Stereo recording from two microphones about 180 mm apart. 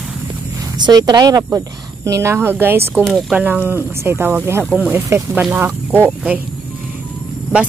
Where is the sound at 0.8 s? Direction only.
20° right (ahead or behind).